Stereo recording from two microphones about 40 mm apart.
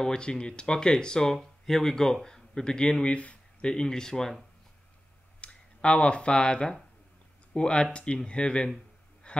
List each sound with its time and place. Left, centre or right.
0.0 s speech: centre
3.7 s speech: centre
5.4 s speech: left
9.3 s sheep: left